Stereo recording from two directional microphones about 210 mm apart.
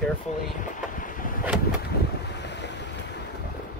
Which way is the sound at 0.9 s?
40° left (ahead or behind).